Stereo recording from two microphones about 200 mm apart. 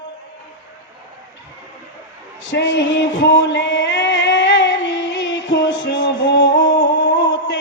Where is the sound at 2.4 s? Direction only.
70° left (ahead or behind).